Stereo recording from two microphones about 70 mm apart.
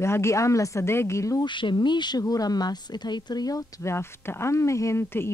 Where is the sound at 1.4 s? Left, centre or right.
Left.